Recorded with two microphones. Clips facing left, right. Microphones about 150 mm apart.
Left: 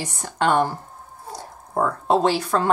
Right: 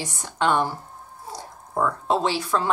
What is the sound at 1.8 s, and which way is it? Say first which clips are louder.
Speech: left 3 dB; 45° left (ahead or behind).